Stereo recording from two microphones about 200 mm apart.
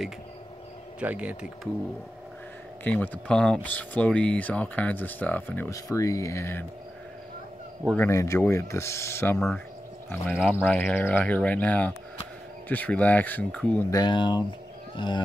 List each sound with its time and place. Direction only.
0.9 s speech: 5° right (ahead or behind)
2.8 s speech: 10° left (ahead or behind)
7.8 s speech: 5° left (ahead or behind)
8.1 s speech: 15° left (ahead or behind)
10.5 s a man's voice: 5° left (ahead or behind)